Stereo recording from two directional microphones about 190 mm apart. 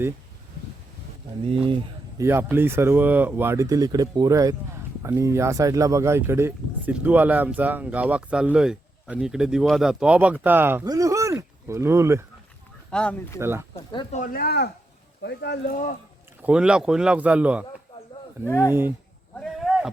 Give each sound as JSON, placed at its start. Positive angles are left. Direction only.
{"t": 2.1, "sound": "speech", "side_deg": -15}
{"t": 12.9, "sound": "speech", "side_deg": 5}
{"t": 13.4, "sound": "speech", "side_deg": -10}
{"t": 13.7, "sound": "speech", "side_deg": 30}
{"t": 14.2, "sound": "speech", "side_deg": 50}
{"t": 16.4, "sound": "speech", "side_deg": -5}
{"t": 18.4, "sound": "speech", "side_deg": 15}
{"t": 18.7, "sound": "speech", "side_deg": -10}
{"t": 19.4, "sound": "a sound", "side_deg": 0}